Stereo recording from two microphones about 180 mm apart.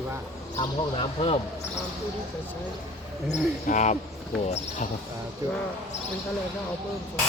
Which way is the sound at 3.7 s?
40° left (ahead or behind).